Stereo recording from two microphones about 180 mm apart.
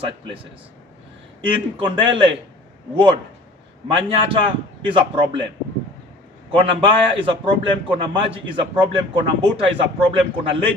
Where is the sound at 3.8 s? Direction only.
30° right (ahead or behind).